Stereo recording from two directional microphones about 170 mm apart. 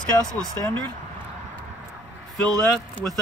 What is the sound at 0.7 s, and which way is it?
Speech, 10° left (ahead or behind).